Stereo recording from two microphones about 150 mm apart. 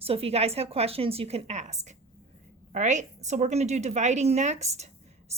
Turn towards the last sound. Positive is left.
turn(degrees=-45)  # may be behind; listen again after turning